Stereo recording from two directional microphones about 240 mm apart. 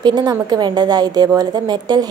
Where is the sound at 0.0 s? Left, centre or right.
Centre.